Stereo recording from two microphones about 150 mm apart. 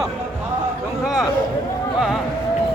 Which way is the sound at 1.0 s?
Centre (ahead or behind).